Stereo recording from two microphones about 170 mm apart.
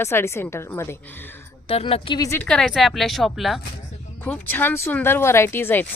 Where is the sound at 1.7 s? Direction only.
35° left (ahead or behind).